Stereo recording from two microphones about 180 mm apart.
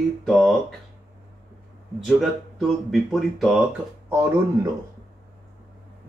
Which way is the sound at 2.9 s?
Centre (ahead or behind).